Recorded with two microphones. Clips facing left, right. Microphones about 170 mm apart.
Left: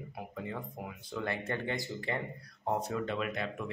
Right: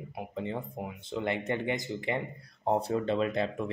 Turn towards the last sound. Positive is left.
turn(degrees=-30)  # may be behind; listen again after turning